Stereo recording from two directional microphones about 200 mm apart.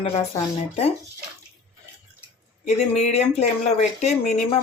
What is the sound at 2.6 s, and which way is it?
Speech, 35° left (ahead or behind).